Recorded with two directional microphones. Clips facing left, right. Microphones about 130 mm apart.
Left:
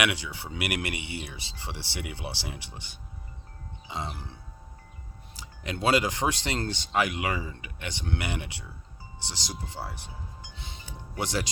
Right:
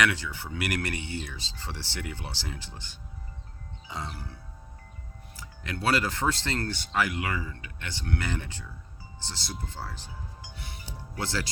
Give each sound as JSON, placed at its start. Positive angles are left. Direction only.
{"t": 0.0, "sound": "speech", "side_deg": 15}
{"t": 3.8, "sound": "music", "side_deg": 20}
{"t": 5.6, "sound": "speech", "side_deg": 20}
{"t": 10.5, "sound": "music", "side_deg": 20}
{"t": 11.1, "sound": "speech", "side_deg": 20}